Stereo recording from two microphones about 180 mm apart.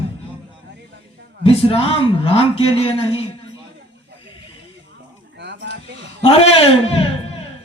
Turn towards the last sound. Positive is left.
turn(degrees=35)  # may be behind; listen again after turning